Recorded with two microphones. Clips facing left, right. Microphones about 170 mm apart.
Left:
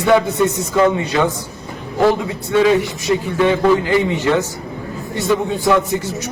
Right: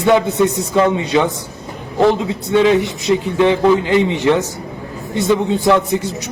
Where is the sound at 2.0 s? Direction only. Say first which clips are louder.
Right 1 dB; 20° right (ahead or behind).